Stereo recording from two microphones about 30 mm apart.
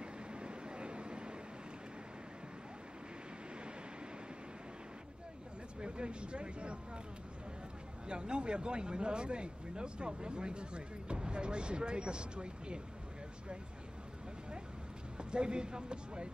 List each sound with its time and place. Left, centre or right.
0.0 s vehicle: right
5.8 s speech: right
8.1 s speech: right
15.1 s speech: right